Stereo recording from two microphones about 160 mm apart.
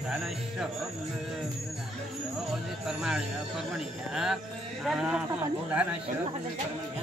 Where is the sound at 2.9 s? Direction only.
5° right (ahead or behind).